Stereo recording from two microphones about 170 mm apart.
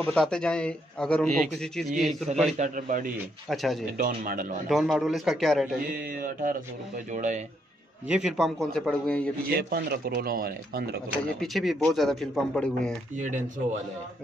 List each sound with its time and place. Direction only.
0.0 s a man's voice: 5° left (ahead or behind)
2.5 s a man's voice: 50° right (ahead or behind)
3.4 s a man's voice: centre (ahead or behind)
4.0 s speech: 55° right (ahead or behind)
4.6 s a man's voice: centre (ahead or behind)
6.0 s a man's voice: 55° right (ahead or behind)
8.1 s a man's voice: centre (ahead or behind)
9.6 s speech: 65° right (ahead or behind)
11.1 s a man's voice: centre (ahead or behind)
13.1 s a man's voice: 45° right (ahead or behind)